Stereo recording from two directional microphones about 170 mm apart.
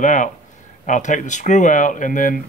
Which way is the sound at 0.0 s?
50° left (ahead or behind).